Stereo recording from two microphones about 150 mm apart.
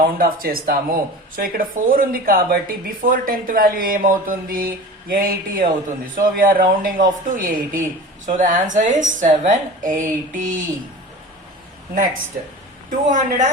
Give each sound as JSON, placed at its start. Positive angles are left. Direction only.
{"t": 0.0, "sound": "speech", "side_deg": -80}
{"t": 8.3, "sound": "a woman's voice", "side_deg": -55}
{"t": 12.9, "sound": "a woman's voice", "side_deg": -60}